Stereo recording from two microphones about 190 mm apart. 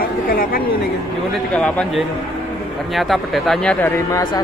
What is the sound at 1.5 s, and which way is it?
Speech, 5° left (ahead or behind).